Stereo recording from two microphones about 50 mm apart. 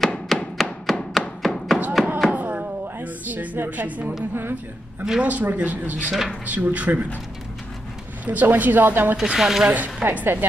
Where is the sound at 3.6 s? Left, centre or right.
Right.